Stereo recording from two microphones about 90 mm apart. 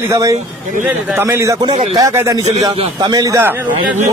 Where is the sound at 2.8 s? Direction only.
60° right (ahead or behind).